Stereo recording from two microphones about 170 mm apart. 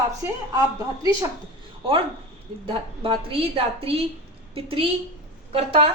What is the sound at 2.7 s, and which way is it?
A woman's voice, 30° right (ahead or behind).